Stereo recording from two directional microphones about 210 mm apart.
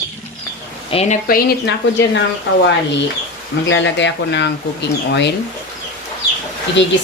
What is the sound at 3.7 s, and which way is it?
Speech, 60° left (ahead or behind).